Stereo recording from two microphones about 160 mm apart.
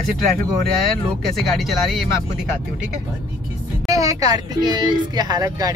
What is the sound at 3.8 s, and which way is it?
Speech, 20° right (ahead or behind).